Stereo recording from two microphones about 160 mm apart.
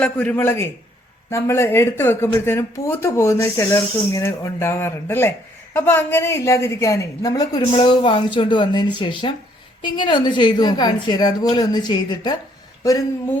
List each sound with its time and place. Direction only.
0.0 s a woman's voice: 10° left (ahead or behind); by 12.4 s 25° left (ahead or behind)